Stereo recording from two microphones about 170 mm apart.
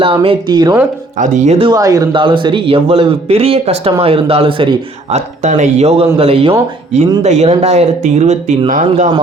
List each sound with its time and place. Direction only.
0.0 s speech: 30° right (ahead or behind)
1.2 s a man's voice: 45° right (ahead or behind)
1.7 s a man's voice: 20° right (ahead or behind)
5.4 s a man's voice: 45° right (ahead or behind)